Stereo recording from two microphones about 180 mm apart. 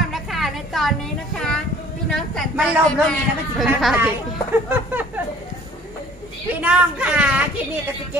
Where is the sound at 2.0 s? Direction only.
Centre (ahead or behind).